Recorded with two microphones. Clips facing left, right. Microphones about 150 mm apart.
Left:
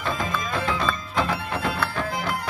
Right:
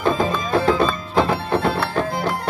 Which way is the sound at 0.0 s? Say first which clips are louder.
Right 8 dB; 30° right (ahead or behind).